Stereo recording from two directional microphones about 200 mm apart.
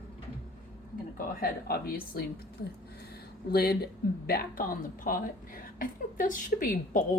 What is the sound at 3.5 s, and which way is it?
Speech, 50° left (ahead or behind).